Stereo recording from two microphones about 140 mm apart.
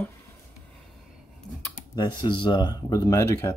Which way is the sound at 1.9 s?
30° left (ahead or behind).